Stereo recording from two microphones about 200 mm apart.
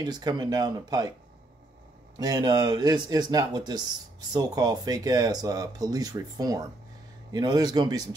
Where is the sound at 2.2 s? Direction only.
20° right (ahead or behind).